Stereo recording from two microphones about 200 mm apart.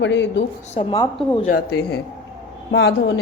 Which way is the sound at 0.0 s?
65° left (ahead or behind).